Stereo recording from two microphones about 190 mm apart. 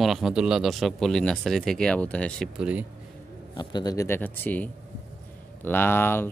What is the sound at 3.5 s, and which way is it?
Speech, 20° left (ahead or behind).